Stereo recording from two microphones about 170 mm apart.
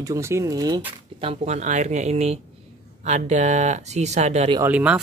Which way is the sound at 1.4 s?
45° right (ahead or behind).